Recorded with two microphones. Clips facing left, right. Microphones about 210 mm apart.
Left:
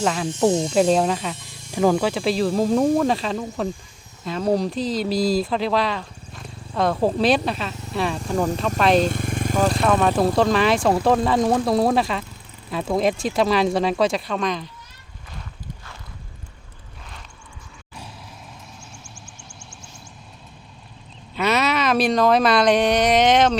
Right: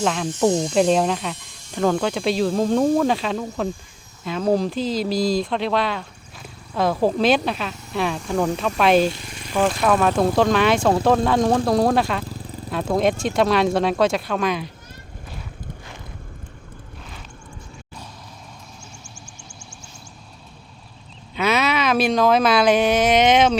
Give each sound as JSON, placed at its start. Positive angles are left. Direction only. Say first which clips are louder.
{"t": 0.0, "sound": "speech", "louder": "even", "side_deg": 0}
{"t": 9.0, "sound": "motorcycle", "louder": "left 4 dB", "side_deg": 50}
{"t": 9.8, "sound": "speech", "louder": "right 1 dB", "side_deg": 0}
{"t": 21.3, "sound": "speech", "louder": "even", "side_deg": 0}